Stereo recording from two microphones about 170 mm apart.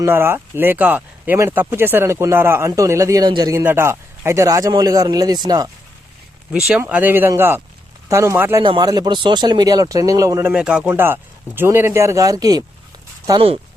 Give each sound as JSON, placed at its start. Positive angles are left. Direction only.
{"t": 0.0, "sound": "speech", "side_deg": -15}
{"t": 3.6, "sound": "speech", "side_deg": -10}
{"t": 6.7, "sound": "speech", "side_deg": -10}
{"t": 8.6, "sound": "speech", "side_deg": -25}
{"t": 10.5, "sound": "speech", "side_deg": -5}